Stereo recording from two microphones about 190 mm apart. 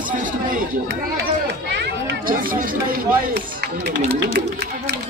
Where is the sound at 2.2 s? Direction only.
45° right (ahead or behind).